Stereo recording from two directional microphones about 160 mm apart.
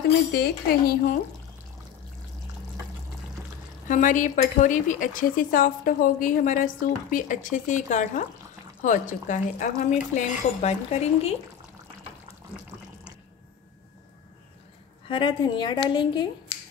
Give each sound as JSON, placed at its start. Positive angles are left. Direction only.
{"t": 0.3, "sound": "speech", "side_deg": 80}
{"t": 3.9, "sound": "speech", "side_deg": 50}
{"t": 15.0, "sound": "a woman's voice", "side_deg": 30}